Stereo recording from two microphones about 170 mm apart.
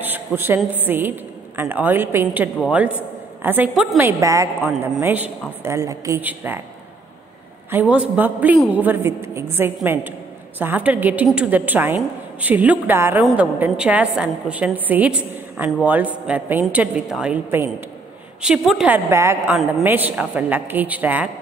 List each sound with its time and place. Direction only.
0.0 s a sound: 10° right (ahead or behind)
0.6 s a woman's voice: 10° right (ahead or behind)
4.2 s a woman's voice: 20° right (ahead or behind)
7.9 s a woman's voice: 10° right (ahead or behind)
19.0 s a woman's voice: 15° right (ahead or behind)